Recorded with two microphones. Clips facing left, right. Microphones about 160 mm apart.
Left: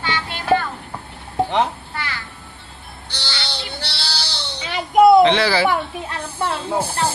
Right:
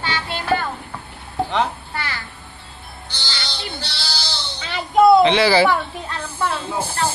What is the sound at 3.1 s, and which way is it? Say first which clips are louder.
Sheep: left 3 dB; 70° left (ahead or behind).